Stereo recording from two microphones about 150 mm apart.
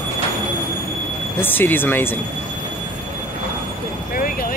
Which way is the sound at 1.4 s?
15° left (ahead or behind).